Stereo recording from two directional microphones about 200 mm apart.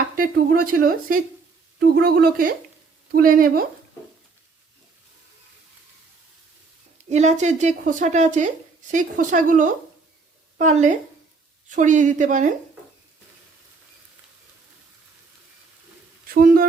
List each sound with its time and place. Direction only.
0.2 s a woman's voice: 45° right (ahead or behind)
7.0 s speech: 35° right (ahead or behind)
16.3 s a woman's voice: 45° right (ahead or behind)